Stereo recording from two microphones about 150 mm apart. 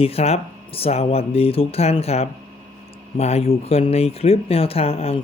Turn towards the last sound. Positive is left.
turn(degrees=40)  # may be behind; listen again after turning